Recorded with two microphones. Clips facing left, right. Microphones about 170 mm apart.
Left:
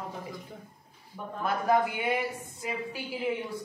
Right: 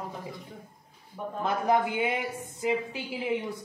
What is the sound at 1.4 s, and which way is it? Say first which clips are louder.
Speech: even; 20° right (ahead or behind).